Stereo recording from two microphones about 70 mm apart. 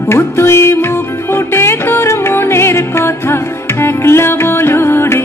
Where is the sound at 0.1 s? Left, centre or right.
Left.